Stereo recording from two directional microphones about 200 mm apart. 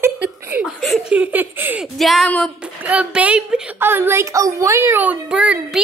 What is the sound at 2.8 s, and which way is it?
A woman's voice, 5° right (ahead or behind).